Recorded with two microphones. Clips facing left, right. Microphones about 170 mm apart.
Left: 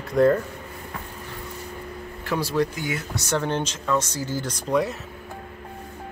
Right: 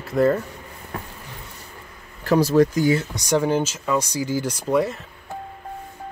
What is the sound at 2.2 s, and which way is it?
Speech, 45° right (ahead or behind).